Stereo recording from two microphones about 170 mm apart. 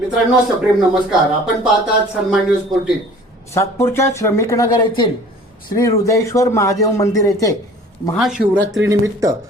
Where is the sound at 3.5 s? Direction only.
15° left (ahead or behind).